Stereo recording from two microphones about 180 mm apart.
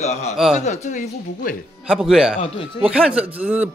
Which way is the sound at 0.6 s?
40° left (ahead or behind).